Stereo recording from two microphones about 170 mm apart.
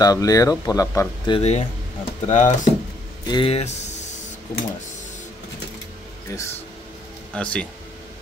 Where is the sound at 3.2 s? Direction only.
30° left (ahead or behind).